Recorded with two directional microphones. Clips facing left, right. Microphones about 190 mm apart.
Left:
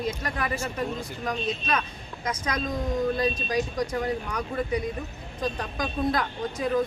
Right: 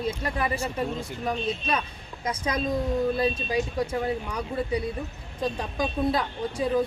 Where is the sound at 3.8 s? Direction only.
25° right (ahead or behind).